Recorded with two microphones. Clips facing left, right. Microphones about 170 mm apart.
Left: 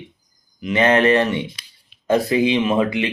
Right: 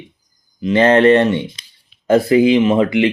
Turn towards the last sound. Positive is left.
turn(degrees=-30)  # may be behind; listen again after turning